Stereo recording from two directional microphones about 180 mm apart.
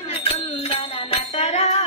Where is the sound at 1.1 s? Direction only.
35° left (ahead or behind).